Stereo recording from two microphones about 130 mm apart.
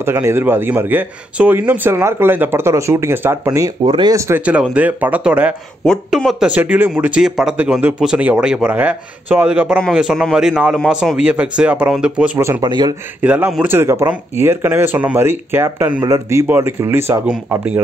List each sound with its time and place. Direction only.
0.0 s speech: 20° right (ahead or behind)
3.8 s speech: 35° right (ahead or behind)
4.5 s speech: 10° right (ahead or behind)
5.9 s a man's voice: centre (ahead or behind)
12.4 s speech: 20° right (ahead or behind)
12.6 s speech: 35° right (ahead or behind)
13.2 s speech: 10° right (ahead or behind)